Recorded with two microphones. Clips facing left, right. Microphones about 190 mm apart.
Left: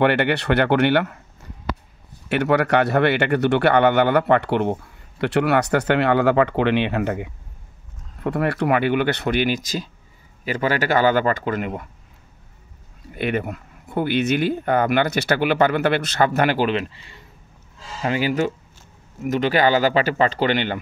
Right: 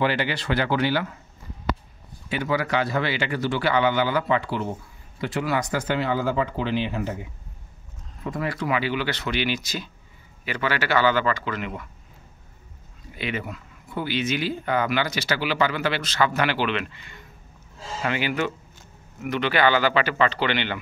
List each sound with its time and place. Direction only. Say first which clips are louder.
0.0 s a man's voice: left 6 dB; 60° left (ahead or behind)
2.2 s a man's voice: left 6 dB; 70° left (ahead or behind); by 11.9 s 45° left (ahead or behind)
13.1 s speech: left 7 dB; 55° left (ahead or behind)